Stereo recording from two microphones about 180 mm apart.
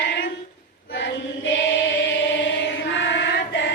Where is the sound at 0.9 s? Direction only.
90° left.